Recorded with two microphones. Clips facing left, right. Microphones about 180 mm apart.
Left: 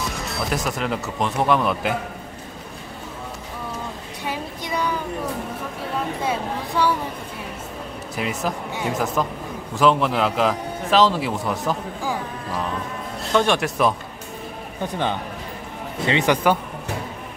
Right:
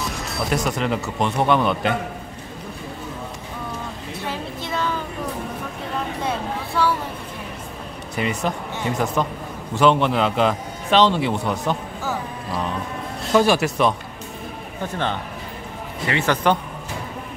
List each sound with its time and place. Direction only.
0.0 s speech: centre (ahead or behind)
4.2 s music: 15° left (ahead or behind)
6.2 s a sound: 10° left (ahead or behind)
8.2 s a man's voice: centre (ahead or behind)
13.3 s a man's voice: 5° right (ahead or behind)
14.8 s speech: 15° left (ahead or behind)